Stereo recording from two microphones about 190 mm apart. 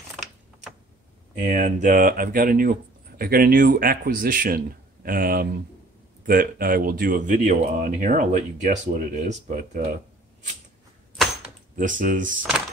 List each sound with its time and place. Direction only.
1.3 s speech: 40° right (ahead or behind)
11.7 s speech: 45° right (ahead or behind)